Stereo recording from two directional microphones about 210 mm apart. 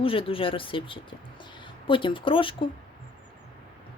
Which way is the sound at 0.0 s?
25° left (ahead or behind).